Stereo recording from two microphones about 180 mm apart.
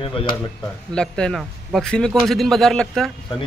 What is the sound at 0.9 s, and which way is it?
Speech, 5° left (ahead or behind).